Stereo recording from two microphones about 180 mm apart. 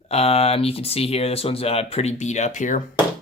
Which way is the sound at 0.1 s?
35° left (ahead or behind).